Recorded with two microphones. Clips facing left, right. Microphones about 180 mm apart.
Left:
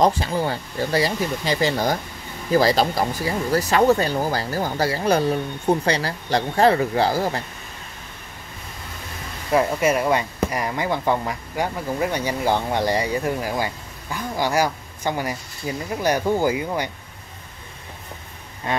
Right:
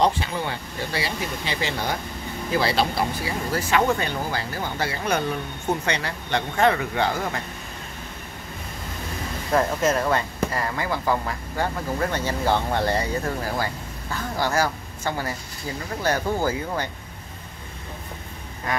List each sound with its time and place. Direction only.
0.0 s speech: 40° left (ahead or behind)
9.5 s a woman's voice: 10° left (ahead or behind)
18.7 s a sound: 25° left (ahead or behind)